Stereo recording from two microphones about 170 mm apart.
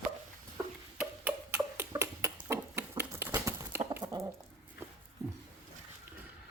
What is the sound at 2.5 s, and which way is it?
Chicken, 15° right (ahead or behind).